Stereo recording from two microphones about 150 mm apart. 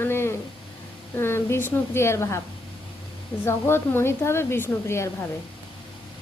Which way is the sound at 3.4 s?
15° left (ahead or behind).